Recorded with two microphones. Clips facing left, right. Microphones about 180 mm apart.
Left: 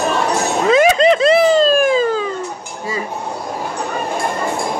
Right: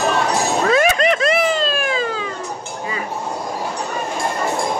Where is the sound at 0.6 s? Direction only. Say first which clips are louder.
Left 6 dB; 20° left (ahead or behind); by 2.2 s 40° left (ahead or behind).